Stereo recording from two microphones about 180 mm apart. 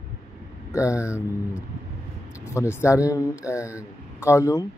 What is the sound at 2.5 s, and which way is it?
Speech, 15° left (ahead or behind).